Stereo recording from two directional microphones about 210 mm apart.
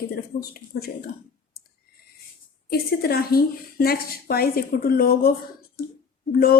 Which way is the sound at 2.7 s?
45° left (ahead or behind).